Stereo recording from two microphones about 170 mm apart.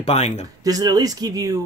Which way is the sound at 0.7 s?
20° right (ahead or behind).